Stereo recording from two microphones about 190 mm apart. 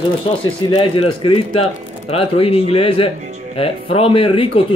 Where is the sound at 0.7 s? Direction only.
25° left (ahead or behind).